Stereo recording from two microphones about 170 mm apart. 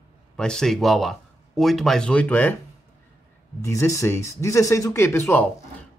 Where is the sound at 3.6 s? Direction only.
15° left (ahead or behind).